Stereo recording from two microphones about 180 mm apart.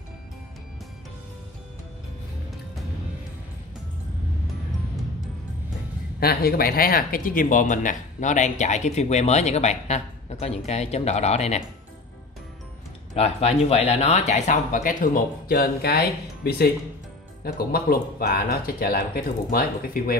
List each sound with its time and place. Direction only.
6.1 s speech: 60° left (ahead or behind); by 11.6 s 35° left (ahead or behind)
13.1 s speech: 35° left (ahead or behind); by 20.2 s 55° left (ahead or behind)